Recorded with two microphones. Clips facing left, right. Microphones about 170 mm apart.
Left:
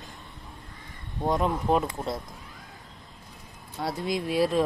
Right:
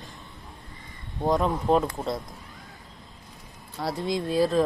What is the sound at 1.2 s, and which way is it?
Speech, 5° left (ahead or behind).